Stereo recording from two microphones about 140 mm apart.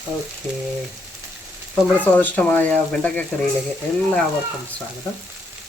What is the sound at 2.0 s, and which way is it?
Speech, 10° left (ahead or behind).